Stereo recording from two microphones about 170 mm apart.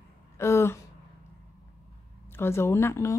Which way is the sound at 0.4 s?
15° left (ahead or behind).